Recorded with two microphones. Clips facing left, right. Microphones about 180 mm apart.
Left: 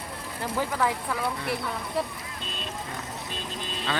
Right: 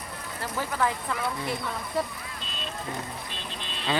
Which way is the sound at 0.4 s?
10° left (ahead or behind).